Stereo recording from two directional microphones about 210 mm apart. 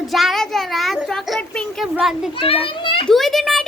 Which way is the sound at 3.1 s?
Centre (ahead or behind).